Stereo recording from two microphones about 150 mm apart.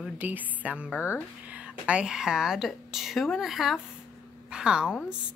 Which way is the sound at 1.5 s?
10° right (ahead or behind).